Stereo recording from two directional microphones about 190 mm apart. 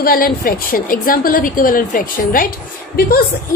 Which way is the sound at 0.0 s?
50° left (ahead or behind).